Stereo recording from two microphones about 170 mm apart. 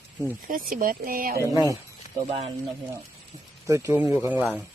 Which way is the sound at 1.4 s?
15° right (ahead or behind).